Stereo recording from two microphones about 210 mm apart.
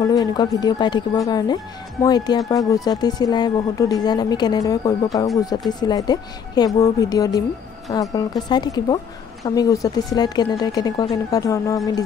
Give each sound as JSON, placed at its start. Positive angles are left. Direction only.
{"t": 0.0, "sound": "speech", "side_deg": 15}